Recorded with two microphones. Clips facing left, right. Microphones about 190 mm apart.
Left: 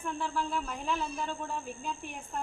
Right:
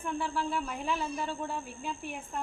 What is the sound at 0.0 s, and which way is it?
A woman's voice, 5° right (ahead or behind).